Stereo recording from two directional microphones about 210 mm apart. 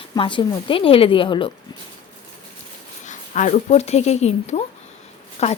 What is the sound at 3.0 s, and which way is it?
Speech, 35° left (ahead or behind).